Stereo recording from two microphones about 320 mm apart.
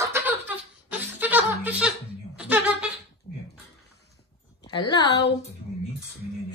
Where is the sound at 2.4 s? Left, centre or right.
Centre.